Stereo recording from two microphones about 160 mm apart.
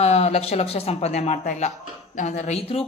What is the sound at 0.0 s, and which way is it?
Speech, 40° left (ahead or behind).